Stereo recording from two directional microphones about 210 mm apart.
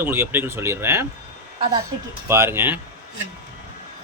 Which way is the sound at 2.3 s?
10° right (ahead or behind).